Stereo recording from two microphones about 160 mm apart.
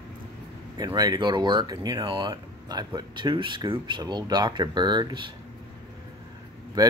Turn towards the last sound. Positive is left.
turn(degrees=-25)  # may be behind; listen again after turning